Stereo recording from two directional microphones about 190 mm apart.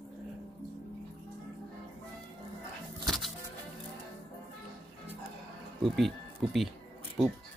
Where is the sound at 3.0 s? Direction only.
Centre (ahead or behind).